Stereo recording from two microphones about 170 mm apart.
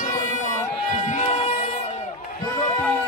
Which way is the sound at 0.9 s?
45° left (ahead or behind).